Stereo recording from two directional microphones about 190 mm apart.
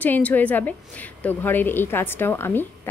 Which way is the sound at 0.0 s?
10° left (ahead or behind).